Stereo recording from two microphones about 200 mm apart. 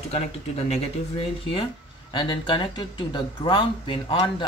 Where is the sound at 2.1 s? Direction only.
20° left (ahead or behind).